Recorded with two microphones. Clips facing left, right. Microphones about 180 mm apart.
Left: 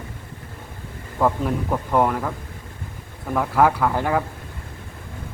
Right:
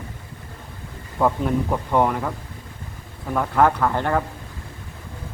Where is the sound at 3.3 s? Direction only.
5° left (ahead or behind).